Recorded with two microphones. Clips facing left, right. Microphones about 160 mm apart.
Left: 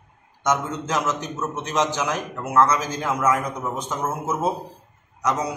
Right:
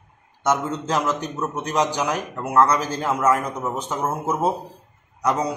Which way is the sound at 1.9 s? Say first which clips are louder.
Right 1 dB; 15° right (ahead or behind).